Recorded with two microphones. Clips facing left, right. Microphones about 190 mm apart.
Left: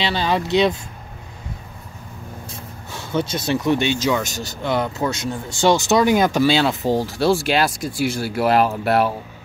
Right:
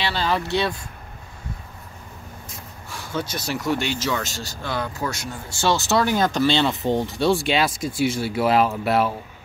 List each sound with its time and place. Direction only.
0.0 s speech: 15° left (ahead or behind)
2.5 s speech: 25° left (ahead or behind); by 9.1 s centre (ahead or behind)